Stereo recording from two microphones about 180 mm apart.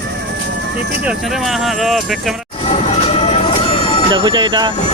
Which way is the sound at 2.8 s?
35° left (ahead or behind).